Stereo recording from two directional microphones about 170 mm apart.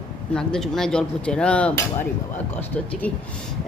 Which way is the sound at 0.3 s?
5° left (ahead or behind).